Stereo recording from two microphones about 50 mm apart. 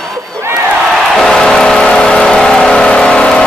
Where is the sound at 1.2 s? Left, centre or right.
Centre.